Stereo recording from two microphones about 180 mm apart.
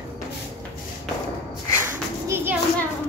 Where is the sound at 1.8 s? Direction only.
15° right (ahead or behind).